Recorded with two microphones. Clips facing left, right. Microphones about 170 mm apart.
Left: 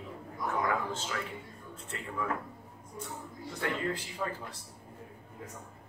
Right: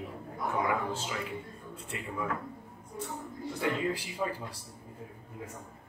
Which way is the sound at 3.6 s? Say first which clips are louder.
Right 2 dB; 10° right (ahead or behind).